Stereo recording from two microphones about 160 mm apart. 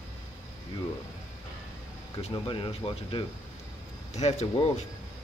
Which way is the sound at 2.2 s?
30° left (ahead or behind).